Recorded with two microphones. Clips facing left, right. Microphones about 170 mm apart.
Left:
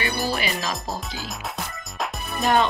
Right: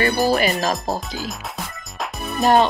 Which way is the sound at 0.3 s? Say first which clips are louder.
Right 8 dB; 45° right (ahead or behind).